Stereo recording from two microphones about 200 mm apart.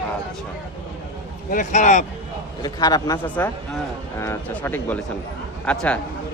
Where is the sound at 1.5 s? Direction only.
40° left (ahead or behind).